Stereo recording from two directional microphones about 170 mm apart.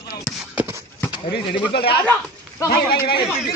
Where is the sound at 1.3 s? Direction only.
70° left (ahead or behind).